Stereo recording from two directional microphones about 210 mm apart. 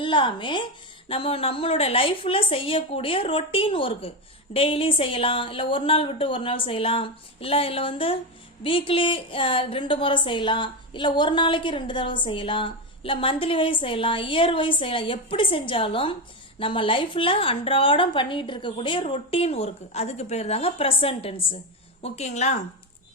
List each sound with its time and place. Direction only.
0.0 s a woman's voice: 25° left (ahead or behind)